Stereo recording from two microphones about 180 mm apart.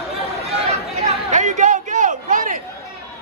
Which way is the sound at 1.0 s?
40° right (ahead or behind).